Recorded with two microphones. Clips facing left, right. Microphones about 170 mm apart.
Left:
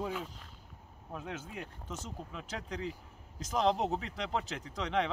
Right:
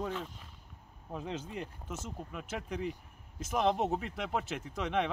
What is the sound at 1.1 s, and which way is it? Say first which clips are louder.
Speech: right 3 dB; 15° right (ahead or behind).